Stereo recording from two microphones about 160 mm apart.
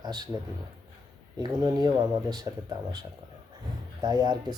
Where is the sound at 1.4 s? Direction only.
25° right (ahead or behind).